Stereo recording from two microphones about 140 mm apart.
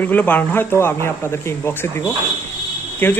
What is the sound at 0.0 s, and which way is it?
Speech, 15° left (ahead or behind).